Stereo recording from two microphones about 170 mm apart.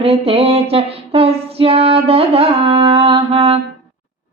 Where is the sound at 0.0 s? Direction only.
35° right (ahead or behind).